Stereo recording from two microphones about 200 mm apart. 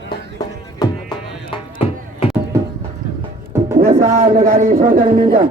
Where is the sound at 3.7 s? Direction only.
40° right (ahead or behind).